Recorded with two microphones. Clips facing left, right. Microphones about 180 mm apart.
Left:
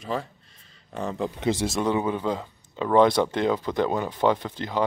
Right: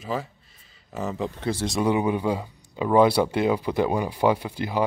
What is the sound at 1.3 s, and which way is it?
Speech, 15° left (ahead or behind).